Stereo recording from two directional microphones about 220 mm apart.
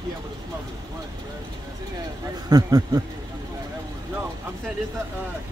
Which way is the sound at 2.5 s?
15° right (ahead or behind).